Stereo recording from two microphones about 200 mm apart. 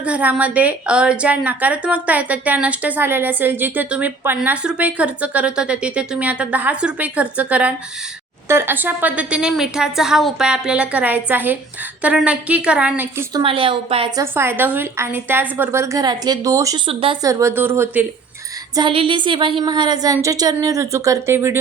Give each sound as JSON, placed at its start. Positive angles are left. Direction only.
{"t": 0.0, "sound": "a woman's voice", "side_deg": -5}
{"t": 13.4, "sound": "a woman's voice", "side_deg": -25}
{"t": 14.3, "sound": "a woman's voice", "side_deg": -10}
{"t": 17.2, "sound": "a woman's voice", "side_deg": -10}
{"t": 18.7, "sound": "a woman's voice", "side_deg": -25}